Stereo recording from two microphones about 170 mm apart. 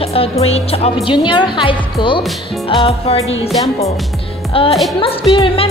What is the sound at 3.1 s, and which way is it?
Music, 35° left (ahead or behind).